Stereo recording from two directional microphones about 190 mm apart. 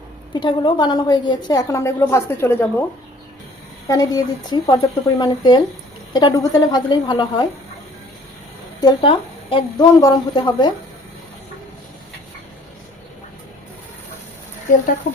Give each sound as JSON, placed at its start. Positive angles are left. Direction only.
{"t": 0.3, "sound": "a woman's voice", "side_deg": 25}
{"t": 3.8, "sound": "a woman's voice", "side_deg": 20}
{"t": 8.8, "sound": "a woman's voice", "side_deg": 25}